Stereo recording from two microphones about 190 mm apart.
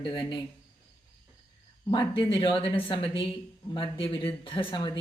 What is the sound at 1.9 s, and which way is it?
Speech, 25° left (ahead or behind).